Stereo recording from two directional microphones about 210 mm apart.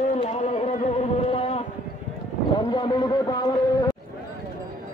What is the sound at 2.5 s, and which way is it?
A man's voice, 20° left (ahead or behind).